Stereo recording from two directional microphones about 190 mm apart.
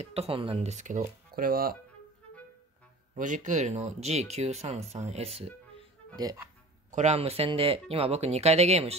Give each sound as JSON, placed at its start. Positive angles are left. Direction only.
{"t": 0.0, "sound": "speech", "side_deg": -30}
{"t": 3.2, "sound": "speech", "side_deg": -40}
{"t": 6.1, "sound": "speech", "side_deg": -20}
{"t": 6.9, "sound": "speech", "side_deg": -35}